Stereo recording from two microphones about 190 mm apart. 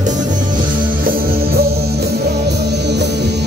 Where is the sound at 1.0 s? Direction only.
50° right (ahead or behind).